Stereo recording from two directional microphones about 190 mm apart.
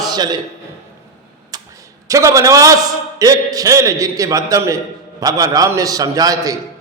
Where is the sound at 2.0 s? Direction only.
15° right (ahead or behind).